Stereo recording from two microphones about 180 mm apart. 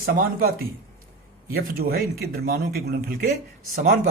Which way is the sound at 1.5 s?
55° right (ahead or behind).